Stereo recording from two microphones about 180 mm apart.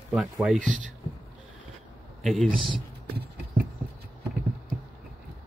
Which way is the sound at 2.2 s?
Centre (ahead or behind).